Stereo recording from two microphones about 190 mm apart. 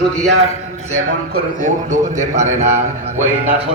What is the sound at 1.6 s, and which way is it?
A man's voice, 40° right (ahead or behind).